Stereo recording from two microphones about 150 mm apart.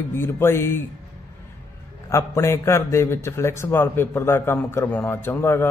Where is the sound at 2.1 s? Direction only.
20° left (ahead or behind).